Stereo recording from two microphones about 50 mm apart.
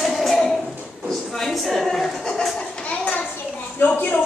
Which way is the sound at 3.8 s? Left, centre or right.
Left.